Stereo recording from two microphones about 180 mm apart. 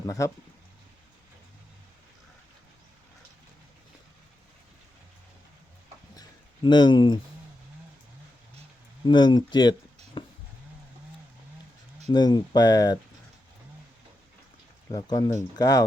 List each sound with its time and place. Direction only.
0.0 s speech: 20° left (ahead or behind)
6.1 s a sound: 25° left (ahead or behind)
9.0 s speech: 25° left (ahead or behind)
10.2 s a sound: 25° left (ahead or behind)
12.1 s speech: 25° left (ahead or behind)
14.9 s speech: 20° left (ahead or behind)